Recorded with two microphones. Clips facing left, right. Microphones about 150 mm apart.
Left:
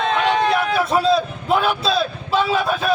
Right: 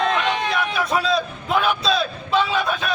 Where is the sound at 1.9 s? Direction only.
35° left (ahead or behind).